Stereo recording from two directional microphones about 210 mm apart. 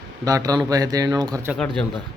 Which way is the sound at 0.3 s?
15° right (ahead or behind).